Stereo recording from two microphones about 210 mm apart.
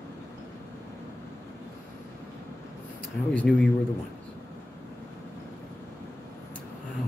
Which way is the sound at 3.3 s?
5° left (ahead or behind).